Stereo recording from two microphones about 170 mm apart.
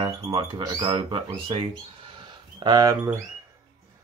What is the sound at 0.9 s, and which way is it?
Speech, 35° right (ahead or behind).